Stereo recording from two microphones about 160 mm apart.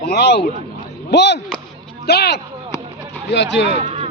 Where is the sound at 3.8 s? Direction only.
40° right (ahead or behind).